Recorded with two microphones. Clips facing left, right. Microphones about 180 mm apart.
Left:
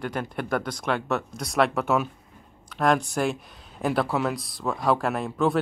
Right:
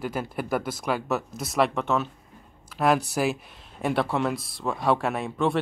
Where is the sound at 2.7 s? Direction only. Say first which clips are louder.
Even; 5° right (ahead or behind).